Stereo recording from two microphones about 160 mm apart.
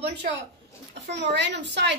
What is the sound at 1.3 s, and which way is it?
Speech, 90° right.